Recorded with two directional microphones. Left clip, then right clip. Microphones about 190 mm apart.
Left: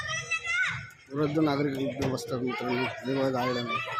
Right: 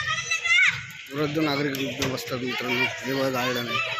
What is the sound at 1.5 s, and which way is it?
Speech, 10° left (ahead or behind).